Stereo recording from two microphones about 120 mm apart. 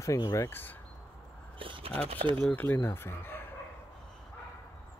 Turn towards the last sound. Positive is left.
turn(degrees=20)  # may be behind; listen again after turning